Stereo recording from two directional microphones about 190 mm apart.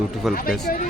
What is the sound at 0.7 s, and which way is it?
Speech, 50° left (ahead or behind).